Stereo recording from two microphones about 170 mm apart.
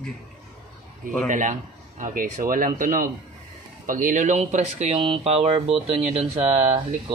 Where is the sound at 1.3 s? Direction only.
45° right (ahead or behind).